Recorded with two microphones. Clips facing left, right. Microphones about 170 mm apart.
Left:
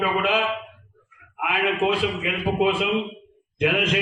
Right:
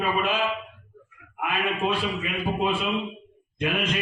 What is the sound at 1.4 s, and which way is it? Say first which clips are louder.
A man's voice: left 4 dB; 90° left.